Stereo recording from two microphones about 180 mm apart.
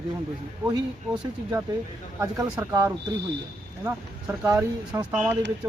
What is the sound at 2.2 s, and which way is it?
Speech, 15° right (ahead or behind).